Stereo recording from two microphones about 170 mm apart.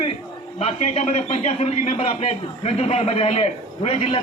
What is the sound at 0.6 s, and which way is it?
A man's voice, 40° left (ahead or behind).